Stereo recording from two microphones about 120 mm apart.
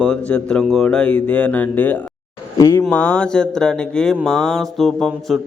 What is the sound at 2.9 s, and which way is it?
Mantra, 10° left (ahead or behind).